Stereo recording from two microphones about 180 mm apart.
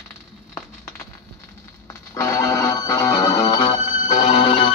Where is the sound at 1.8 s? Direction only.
15° left (ahead or behind).